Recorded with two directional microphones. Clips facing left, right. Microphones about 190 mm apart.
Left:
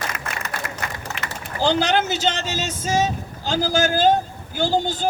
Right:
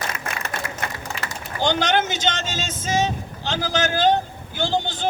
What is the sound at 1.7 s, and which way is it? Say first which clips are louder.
Speech: left 1 dB; 35° left (ahead or behind).